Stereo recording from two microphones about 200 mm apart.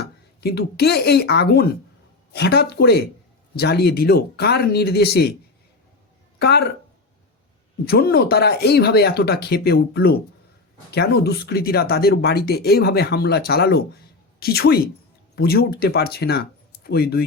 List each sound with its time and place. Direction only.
0.0 s speech: 55° left (ahead or behind)
6.4 s speech: 55° left (ahead or behind)
7.9 s speech: 50° left (ahead or behind)